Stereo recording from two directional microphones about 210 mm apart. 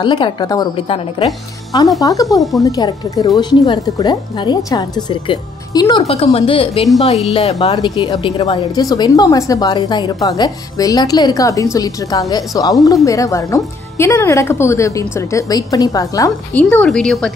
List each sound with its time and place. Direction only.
0.0 s a woman's voice: 20° left (ahead or behind)
2.0 s a woman's voice: 15° left (ahead or behind)
16.6 s a woman's voice: 5° left (ahead or behind)